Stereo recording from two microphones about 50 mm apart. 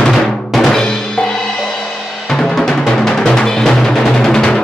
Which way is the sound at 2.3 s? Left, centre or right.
Centre.